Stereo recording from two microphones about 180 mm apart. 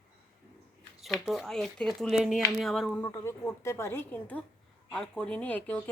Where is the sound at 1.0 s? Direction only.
Centre (ahead or behind).